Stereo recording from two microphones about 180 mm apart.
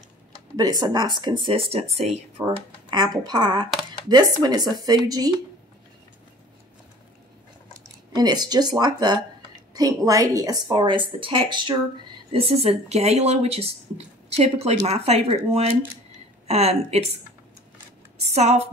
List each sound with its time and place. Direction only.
0.6 s a woman's voice: 20° right (ahead or behind)
2.4 s a woman's voice: 20° right (ahead or behind)
8.1 s a woman's voice: 25° right (ahead or behind)
18.3 s speech: 35° right (ahead or behind)